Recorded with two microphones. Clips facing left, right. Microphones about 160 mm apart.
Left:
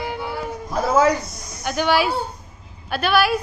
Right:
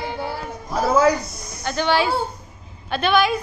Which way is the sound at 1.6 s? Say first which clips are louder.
Left 1 dB; 10° left (ahead or behind).